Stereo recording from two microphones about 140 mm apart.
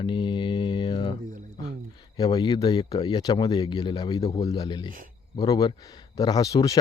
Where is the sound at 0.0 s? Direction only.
35° left (ahead or behind).